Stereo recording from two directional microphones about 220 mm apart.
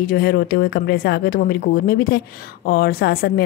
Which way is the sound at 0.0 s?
45° left (ahead or behind).